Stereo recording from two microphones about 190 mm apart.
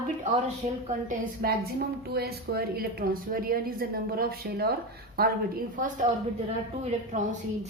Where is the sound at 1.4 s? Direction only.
55° right (ahead or behind).